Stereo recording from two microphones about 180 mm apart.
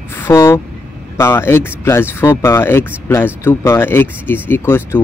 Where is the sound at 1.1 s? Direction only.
15° left (ahead or behind).